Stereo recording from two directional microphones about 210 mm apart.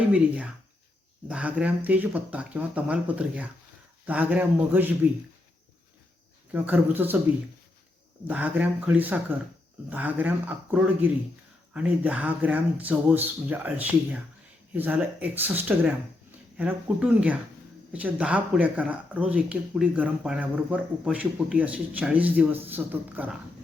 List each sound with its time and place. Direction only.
0.1 s speech: 5° right (ahead or behind)
6.5 s speech: 5° right (ahead or behind)
8.3 s speech: 5° right (ahead or behind)